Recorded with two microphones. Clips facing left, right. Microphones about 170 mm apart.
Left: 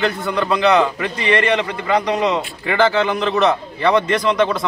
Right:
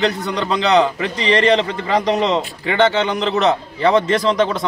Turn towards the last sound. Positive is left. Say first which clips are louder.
# right 1 dB
turn(degrees=-25)  # may be behind; listen again after turning